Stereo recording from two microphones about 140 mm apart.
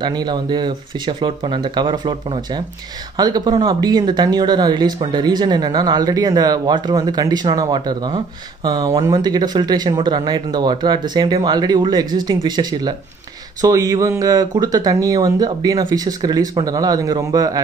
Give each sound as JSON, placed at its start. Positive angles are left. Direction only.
{"t": 0.0, "sound": "speech", "side_deg": -30}